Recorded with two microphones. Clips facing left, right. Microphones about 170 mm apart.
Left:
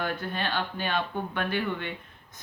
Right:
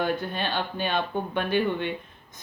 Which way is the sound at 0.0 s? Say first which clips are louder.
Right 4 dB; 20° right (ahead or behind).